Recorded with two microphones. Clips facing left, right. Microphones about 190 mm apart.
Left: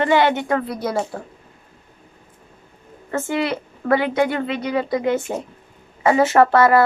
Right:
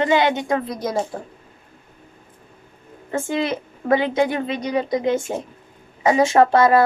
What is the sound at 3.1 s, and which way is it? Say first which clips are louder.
A woman's voice: even; 15° right (ahead or behind).